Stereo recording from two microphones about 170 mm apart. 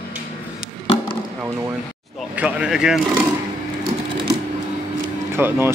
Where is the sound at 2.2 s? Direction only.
5° right (ahead or behind).